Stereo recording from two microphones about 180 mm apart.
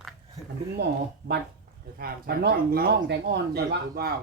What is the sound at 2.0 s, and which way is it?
Speech, 60° right (ahead or behind).